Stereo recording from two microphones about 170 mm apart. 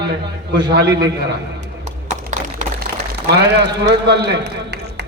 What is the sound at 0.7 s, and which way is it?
Speech, 80° right.